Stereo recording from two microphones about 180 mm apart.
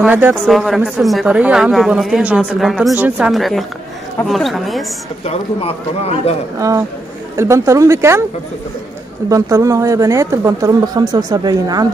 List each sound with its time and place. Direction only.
0.0 s speech: 10° right (ahead or behind)
5.2 s a man's voice: 35° left (ahead or behind)
7.3 s speech: 15° right (ahead or behind)
9.3 s speech: 20° right (ahead or behind)